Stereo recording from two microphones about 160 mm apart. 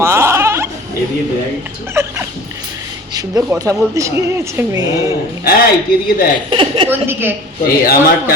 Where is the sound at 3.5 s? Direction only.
20° right (ahead or behind).